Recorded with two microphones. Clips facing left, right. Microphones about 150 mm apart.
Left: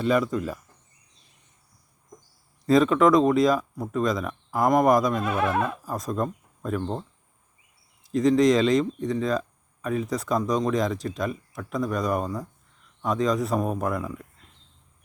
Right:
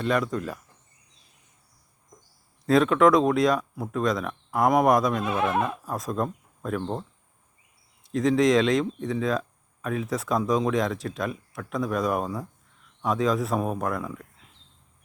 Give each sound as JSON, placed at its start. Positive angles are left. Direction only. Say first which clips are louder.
{"t": 0.0, "sound": "speech", "louder": "left 2 dB", "side_deg": 0}
{"t": 2.6, "sound": "speech", "louder": "even", "side_deg": 0}
{"t": 5.2, "sound": "music", "louder": "even", "side_deg": -20}
{"t": 5.8, "sound": "speech", "louder": "even", "side_deg": 0}
{"t": 8.0, "sound": "speech", "louder": "left 2 dB", "side_deg": 0}